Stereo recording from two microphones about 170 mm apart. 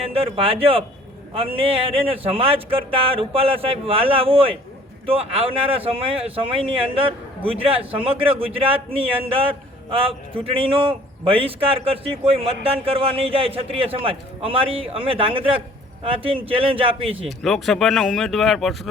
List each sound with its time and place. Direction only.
0.1 s speech: 35° right (ahead or behind)
17.2 s speech: centre (ahead or behind)